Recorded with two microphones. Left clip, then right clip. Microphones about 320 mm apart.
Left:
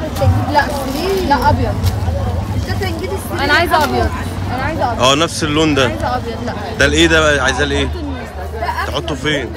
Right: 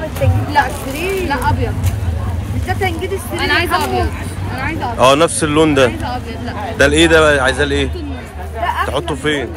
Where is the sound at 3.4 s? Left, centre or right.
Centre.